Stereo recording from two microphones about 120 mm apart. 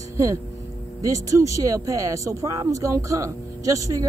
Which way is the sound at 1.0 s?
25° right (ahead or behind).